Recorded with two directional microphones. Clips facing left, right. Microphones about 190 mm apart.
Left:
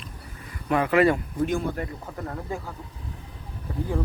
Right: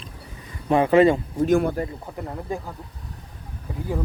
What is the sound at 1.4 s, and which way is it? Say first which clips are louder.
Speech: right 8 dB; 60° right (ahead or behind).